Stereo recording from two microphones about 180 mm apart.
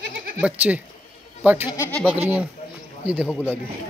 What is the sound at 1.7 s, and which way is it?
Speech, 10° left (ahead or behind).